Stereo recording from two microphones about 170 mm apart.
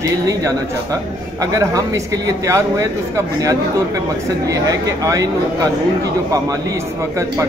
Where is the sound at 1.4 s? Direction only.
20° right (ahead or behind).